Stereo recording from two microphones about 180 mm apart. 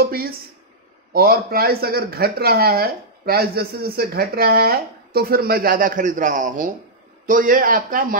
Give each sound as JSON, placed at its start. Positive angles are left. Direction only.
{"t": 0.0, "sound": "speech", "side_deg": -55}